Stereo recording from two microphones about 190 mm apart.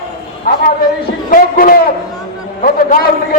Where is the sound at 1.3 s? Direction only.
50° left (ahead or behind).